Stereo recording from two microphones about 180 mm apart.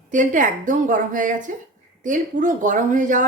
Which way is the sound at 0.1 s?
45° right (ahead or behind).